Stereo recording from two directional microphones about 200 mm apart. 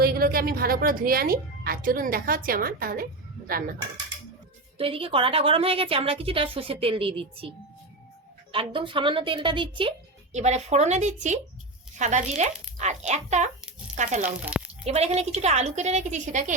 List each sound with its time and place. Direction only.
0.0 s a woman's voice: 50° right (ahead or behind)
4.8 s a woman's voice: 30° right (ahead or behind)
8.5 s a woman's voice: 25° right (ahead or behind)